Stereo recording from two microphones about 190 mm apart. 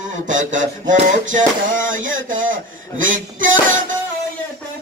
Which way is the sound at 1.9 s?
90° right.